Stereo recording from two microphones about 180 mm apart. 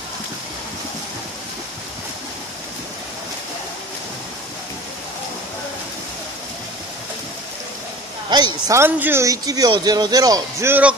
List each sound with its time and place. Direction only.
8.3 s a man's voice: 25° right (ahead or behind)